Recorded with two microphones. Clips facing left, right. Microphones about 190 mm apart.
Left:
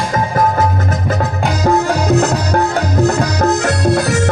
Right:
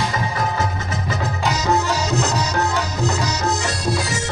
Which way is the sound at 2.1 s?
55° left (ahead or behind).